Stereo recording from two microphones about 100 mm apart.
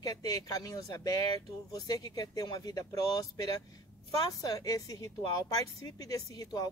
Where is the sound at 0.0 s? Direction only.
40° left (ahead or behind).